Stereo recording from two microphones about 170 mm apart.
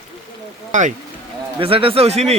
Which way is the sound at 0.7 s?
45° right (ahead or behind).